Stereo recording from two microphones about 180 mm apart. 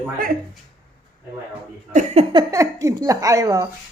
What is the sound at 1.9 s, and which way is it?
Speech, 40° right (ahead or behind).